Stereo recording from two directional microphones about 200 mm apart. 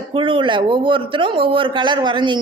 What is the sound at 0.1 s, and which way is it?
A woman's voice, 25° right (ahead or behind).